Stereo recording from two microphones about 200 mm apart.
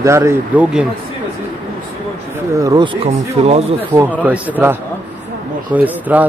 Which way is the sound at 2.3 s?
15° right (ahead or behind).